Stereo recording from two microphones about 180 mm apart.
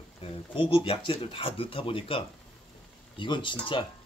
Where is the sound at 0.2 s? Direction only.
30° left (ahead or behind).